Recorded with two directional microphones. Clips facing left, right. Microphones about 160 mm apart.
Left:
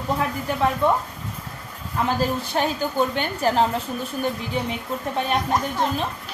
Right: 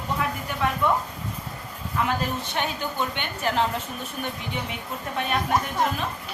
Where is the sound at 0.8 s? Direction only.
30° left (ahead or behind).